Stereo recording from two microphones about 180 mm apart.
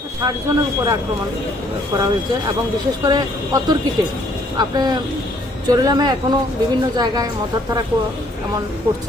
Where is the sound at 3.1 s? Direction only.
20° right (ahead or behind).